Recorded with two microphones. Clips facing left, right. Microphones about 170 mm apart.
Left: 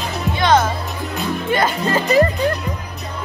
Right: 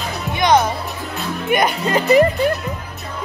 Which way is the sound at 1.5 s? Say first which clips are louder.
Right 2 dB; 15° right (ahead or behind).